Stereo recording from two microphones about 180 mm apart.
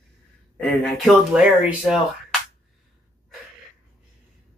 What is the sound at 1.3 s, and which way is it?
Speech, 5° right (ahead or behind).